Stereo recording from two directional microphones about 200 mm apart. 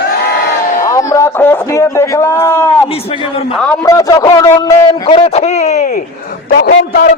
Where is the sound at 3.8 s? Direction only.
15° left (ahead or behind); by 5.9 s 35° left (ahead or behind).